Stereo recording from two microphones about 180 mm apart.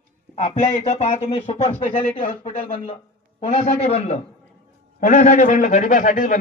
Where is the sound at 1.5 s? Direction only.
30° left (ahead or behind).